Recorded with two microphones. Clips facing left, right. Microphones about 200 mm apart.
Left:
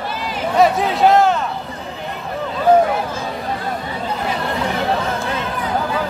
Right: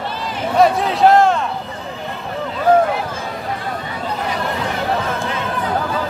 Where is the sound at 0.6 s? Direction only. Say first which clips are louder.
Right 1 dB; centre (ahead or behind).